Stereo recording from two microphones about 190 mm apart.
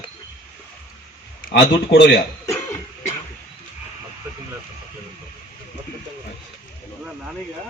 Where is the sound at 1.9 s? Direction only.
60° left (ahead or behind).